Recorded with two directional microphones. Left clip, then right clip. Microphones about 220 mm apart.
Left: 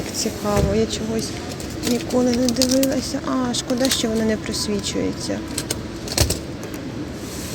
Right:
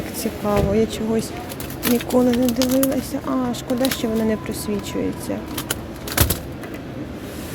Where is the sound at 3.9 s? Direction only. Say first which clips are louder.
Left 1 dB; 5° right (ahead or behind).